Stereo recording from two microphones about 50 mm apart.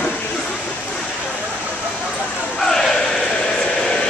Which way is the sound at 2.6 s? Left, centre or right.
Centre.